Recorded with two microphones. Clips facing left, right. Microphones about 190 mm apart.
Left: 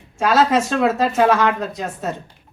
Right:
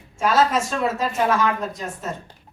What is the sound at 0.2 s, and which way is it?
A woman's voice, 70° left (ahead or behind).